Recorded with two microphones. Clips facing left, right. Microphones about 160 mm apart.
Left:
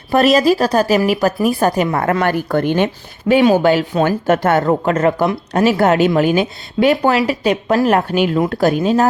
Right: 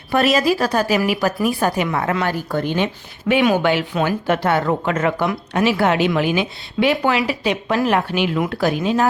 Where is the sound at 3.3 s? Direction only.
35° left (ahead or behind).